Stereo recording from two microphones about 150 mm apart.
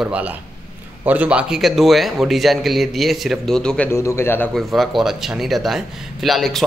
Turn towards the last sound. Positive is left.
turn(degrees=0)  # may be behind; listen again after turning